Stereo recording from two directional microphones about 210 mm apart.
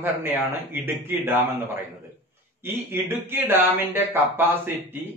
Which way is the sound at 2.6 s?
10° right (ahead or behind).